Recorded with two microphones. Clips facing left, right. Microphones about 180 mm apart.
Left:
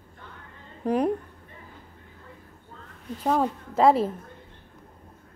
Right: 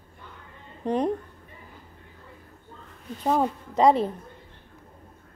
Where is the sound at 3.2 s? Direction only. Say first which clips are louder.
Even; centre (ahead or behind).